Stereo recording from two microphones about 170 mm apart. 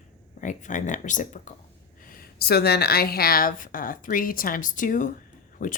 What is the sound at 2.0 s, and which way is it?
A woman's voice, 60° left (ahead or behind).